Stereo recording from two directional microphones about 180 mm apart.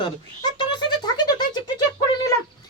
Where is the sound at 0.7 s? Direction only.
25° left (ahead or behind).